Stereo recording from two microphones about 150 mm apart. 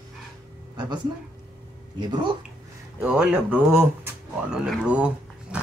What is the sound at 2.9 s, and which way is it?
Speech, 5° right (ahead or behind).